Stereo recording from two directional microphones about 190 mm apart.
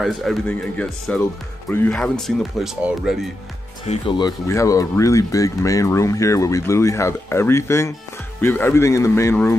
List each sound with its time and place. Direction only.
0.0 s speech: centre (ahead or behind)
3.8 s speech: 35° left (ahead or behind)
4.2 s speech: 15° left (ahead or behind)